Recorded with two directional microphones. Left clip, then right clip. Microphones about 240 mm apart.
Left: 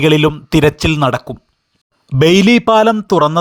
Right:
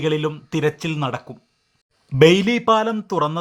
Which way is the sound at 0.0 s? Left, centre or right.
Left.